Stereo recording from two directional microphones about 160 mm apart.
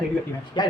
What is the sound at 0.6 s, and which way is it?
Speech, 25° left (ahead or behind).